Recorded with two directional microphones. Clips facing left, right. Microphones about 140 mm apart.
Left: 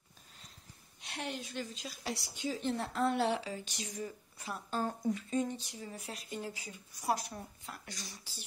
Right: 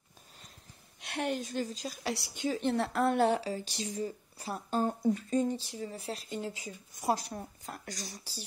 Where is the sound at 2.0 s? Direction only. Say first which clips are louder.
Right 4 dB; 65° right (ahead or behind); by 7.2 s 25° right (ahead or behind).